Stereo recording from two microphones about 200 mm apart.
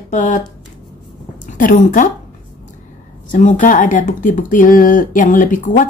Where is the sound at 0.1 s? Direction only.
40° left (ahead or behind).